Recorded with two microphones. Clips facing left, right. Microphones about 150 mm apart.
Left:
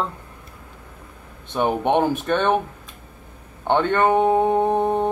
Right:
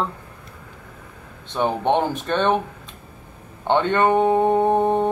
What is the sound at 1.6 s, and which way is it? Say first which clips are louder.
Speech: left 1 dB; 15° left (ahead or behind).